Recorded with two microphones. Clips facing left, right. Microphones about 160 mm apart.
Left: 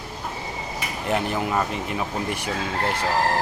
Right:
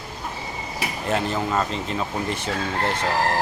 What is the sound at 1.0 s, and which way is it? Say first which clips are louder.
Speech: even; 15° left (ahead or behind).